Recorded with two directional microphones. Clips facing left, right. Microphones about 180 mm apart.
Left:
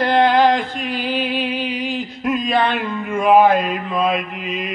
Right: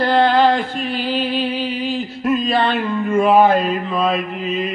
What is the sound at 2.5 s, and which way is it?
Mantra, 15° left (ahead or behind).